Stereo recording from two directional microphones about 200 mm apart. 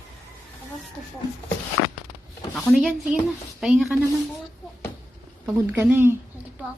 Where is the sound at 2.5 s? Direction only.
Centre (ahead or behind).